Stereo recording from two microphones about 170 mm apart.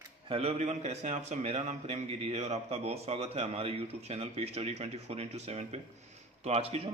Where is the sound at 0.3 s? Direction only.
35° right (ahead or behind).